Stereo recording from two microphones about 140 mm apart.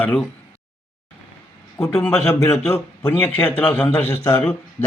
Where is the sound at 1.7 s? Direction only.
20° left (ahead or behind).